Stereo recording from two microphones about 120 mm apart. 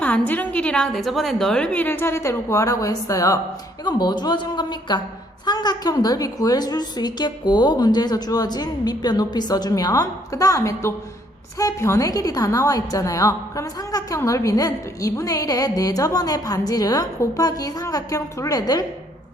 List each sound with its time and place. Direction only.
0.0 s a woman's voice: 15° left (ahead or behind); by 18.9 s 30° left (ahead or behind)